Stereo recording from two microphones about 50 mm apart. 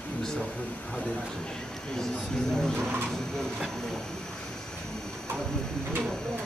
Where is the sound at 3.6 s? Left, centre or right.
Centre.